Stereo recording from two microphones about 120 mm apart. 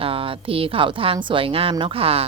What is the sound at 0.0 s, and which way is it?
Speech, 50° right (ahead or behind).